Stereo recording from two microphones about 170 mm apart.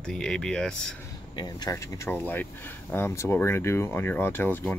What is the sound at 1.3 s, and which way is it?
Speech, 25° left (ahead or behind).